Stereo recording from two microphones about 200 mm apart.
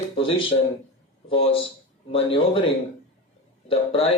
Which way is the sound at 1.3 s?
25° left (ahead or behind).